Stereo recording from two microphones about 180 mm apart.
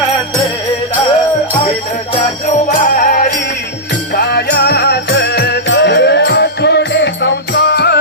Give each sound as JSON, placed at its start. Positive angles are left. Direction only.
{"t": 2.5, "sound": "music", "side_deg": 45}
{"t": 4.1, "sound": "music", "side_deg": 60}